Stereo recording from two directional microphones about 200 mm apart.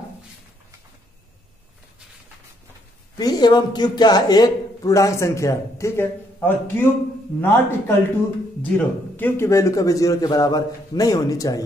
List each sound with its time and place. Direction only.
3.2 s a man's voice: 20° left (ahead or behind)